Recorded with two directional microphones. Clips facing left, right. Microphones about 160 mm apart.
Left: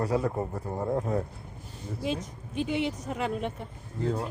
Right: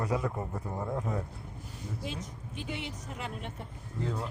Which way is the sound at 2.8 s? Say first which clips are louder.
Left 10 dB; 90° left.